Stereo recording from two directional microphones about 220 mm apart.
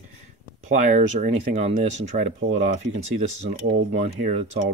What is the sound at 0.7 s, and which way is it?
Speech, 35° right (ahead or behind).